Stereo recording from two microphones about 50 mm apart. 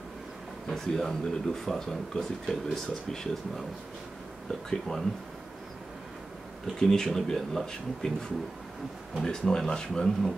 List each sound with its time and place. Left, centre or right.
0.7 s speech: centre
4.6 s speech: centre
6.8 s speech: centre